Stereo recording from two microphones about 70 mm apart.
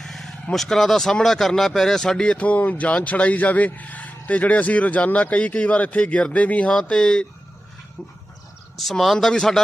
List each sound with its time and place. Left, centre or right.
0.0 s vehicle: centre
0.5 s speech: centre
8.8 s speech: centre